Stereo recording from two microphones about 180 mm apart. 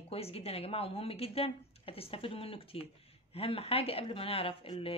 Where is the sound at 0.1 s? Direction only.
35° left (ahead or behind).